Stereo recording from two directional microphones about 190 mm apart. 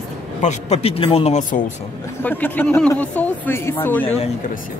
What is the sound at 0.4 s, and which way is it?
Speech, 35° left (ahead or behind).